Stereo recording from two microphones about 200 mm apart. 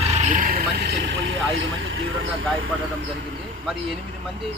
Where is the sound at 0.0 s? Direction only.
35° right (ahead or behind); by 2.2 s 75° right (ahead or behind).